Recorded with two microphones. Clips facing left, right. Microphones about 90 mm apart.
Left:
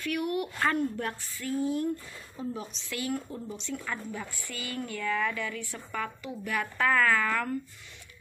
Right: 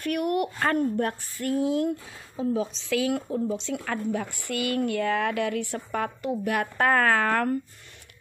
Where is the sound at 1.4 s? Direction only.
80° right; by 7.5 s 55° right (ahead or behind).